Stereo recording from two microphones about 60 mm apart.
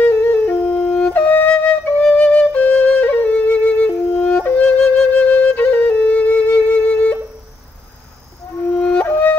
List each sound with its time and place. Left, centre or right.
0.0 s flute: left
0.7 s wind instrument: centre
1.1 s flute: left
4.4 s music: left
4.6 s flute: centre
8.7 s music: left